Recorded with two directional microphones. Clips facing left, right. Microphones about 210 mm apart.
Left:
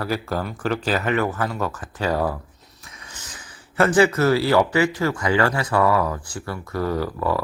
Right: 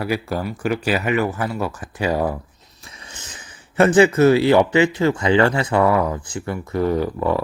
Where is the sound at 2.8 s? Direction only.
25° right (ahead or behind).